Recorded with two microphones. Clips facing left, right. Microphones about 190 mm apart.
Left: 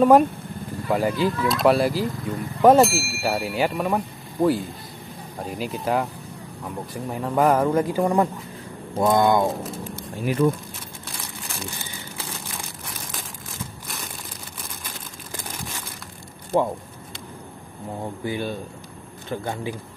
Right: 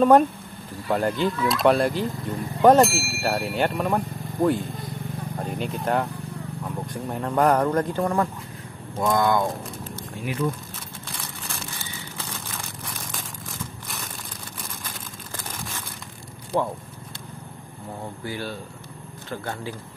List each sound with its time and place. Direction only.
0.0 s a man's voice: 5° left (ahead or behind); by 9.5 s 20° left (ahead or behind)
16.5 s a man's voice: 10° left (ahead or behind)
18.2 s a man's voice: 20° left (ahead or behind)